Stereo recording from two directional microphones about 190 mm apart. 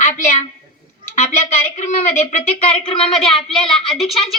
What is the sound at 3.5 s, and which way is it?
Speech, 30° left (ahead or behind).